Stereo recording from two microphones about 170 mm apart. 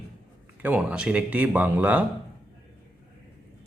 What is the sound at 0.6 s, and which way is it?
Speech, 10° right (ahead or behind).